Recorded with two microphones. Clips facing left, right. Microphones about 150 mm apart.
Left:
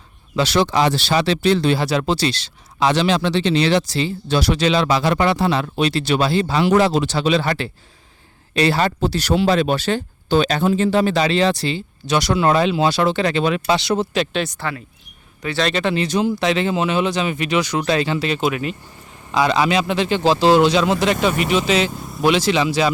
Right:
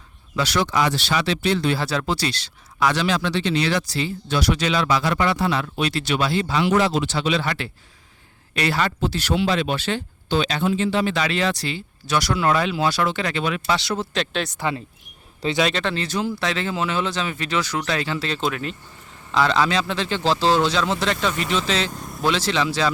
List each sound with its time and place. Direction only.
0.3 s speech: 25° left (ahead or behind)
1.8 s speech: 20° left (ahead or behind)
14.1 s speech: 5° left (ahead or behind)
15.7 s speech: 10° left (ahead or behind)